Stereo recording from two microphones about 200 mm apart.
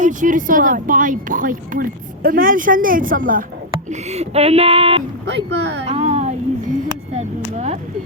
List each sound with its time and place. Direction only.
0.0 s speech: 40° right (ahead or behind)
3.8 s speech: 35° right (ahead or behind)
5.2 s speech: 60° right (ahead or behind)
5.9 s music: 30° right (ahead or behind)
7.2 s speech: 30° right (ahead or behind)